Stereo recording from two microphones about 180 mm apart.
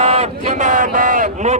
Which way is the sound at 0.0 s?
35° right (ahead or behind).